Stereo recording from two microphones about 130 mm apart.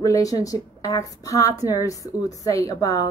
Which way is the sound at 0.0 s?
25° left (ahead or behind).